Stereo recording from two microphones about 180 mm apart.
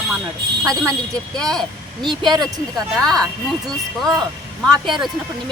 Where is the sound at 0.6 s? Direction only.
5° left (ahead or behind).